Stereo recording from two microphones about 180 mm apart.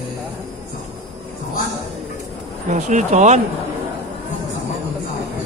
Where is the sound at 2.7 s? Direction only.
40° right (ahead or behind).